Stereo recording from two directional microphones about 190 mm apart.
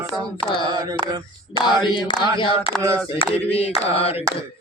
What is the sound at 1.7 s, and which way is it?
Speech, 25° left (ahead or behind).